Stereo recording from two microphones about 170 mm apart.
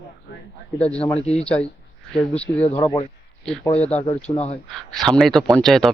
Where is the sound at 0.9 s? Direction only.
5° left (ahead or behind).